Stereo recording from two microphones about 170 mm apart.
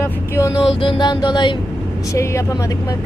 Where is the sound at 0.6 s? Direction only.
30° left (ahead or behind).